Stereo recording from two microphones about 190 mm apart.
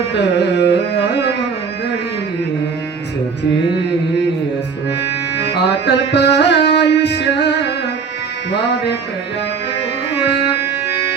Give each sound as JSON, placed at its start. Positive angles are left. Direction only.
{"t": 0.1, "sound": "carnatic music", "side_deg": 60}
{"t": 5.5, "sound": "music", "side_deg": 60}
{"t": 10.2, "sound": "music", "side_deg": 65}